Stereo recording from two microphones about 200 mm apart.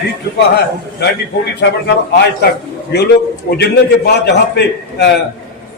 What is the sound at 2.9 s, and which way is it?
A man's voice, 55° left (ahead or behind).